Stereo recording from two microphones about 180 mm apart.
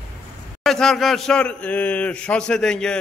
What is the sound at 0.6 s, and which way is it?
A man's voice, centre (ahead or behind).